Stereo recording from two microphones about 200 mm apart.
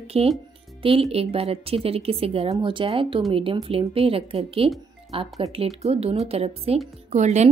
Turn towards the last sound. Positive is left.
turn(degrees=-35)  # may be behind; listen again after turning